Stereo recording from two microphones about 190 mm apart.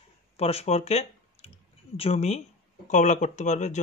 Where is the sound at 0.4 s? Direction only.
30° left (ahead or behind).